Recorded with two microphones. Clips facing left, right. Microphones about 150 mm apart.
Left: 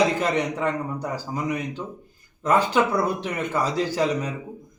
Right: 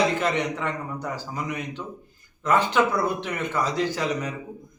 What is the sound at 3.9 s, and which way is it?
Speech, 30° left (ahead or behind).